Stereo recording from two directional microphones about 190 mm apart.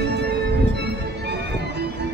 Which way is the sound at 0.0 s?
60° right (ahead or behind).